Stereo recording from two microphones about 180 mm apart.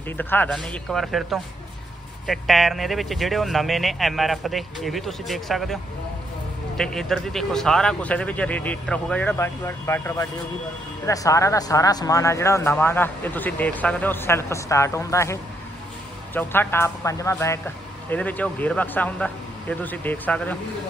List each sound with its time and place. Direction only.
0.2 s speech: 10° left (ahead or behind)
6.8 s speech: 5° left (ahead or behind)
16.3 s speech: 10° left (ahead or behind)